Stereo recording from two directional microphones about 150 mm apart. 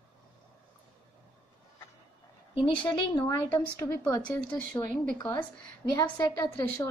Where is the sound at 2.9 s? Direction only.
30° left (ahead or behind).